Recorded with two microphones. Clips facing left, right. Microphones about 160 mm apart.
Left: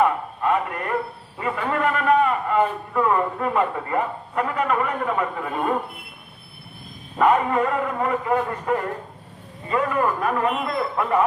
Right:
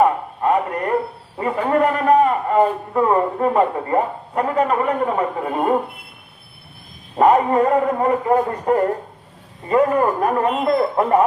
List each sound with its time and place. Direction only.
0.0 s a sound: 35° right (ahead or behind)
1.4 s a man's voice: 35° right (ahead or behind)
7.2 s a man's voice: 35° right (ahead or behind)